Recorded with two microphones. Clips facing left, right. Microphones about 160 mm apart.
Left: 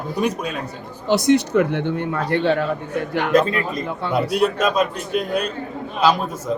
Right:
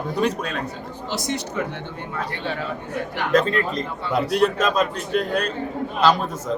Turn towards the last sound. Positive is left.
turn(degrees=10)  # may be behind; listen again after turning